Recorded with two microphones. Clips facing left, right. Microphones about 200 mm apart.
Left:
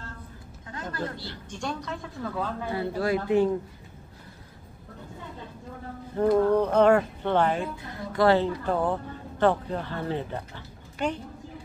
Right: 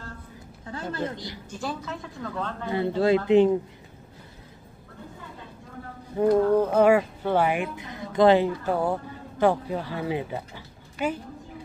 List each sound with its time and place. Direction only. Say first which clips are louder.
0.9 s speech: right 1 dB; 20° right (ahead or behind); by 2.5 s 5° left (ahead or behind)
2.7 s speech: right 6 dB; 25° right (ahead or behind)
6.2 s a woman's voice: right 1 dB; 5° right (ahead or behind)